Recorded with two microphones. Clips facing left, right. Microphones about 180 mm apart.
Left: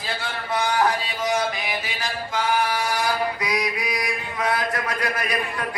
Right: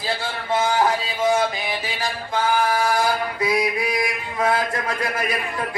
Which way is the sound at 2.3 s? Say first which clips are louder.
Right 3 dB; 30° right (ahead or behind).